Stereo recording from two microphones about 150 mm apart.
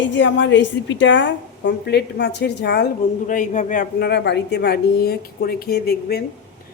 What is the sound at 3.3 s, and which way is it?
A woman's voice, 55° left (ahead or behind).